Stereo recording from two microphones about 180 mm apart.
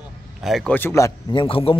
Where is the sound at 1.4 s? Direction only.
30° left (ahead or behind).